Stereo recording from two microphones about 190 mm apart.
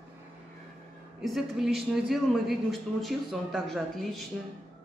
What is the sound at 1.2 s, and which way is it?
A woman's voice, centre (ahead or behind).